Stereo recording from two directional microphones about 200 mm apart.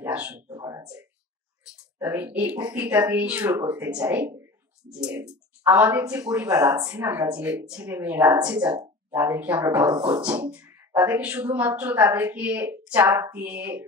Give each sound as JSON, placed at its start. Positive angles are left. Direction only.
{"t": 0.0, "sound": "a sound", "side_deg": -5}
{"t": 0.5, "sound": "a sound", "side_deg": -15}
{"t": 2.0, "sound": "speech", "side_deg": -10}
{"t": 6.4, "sound": "speech", "side_deg": -20}
{"t": 9.8, "sound": "speech", "side_deg": -20}
{"t": 10.2, "sound": "speech", "side_deg": -5}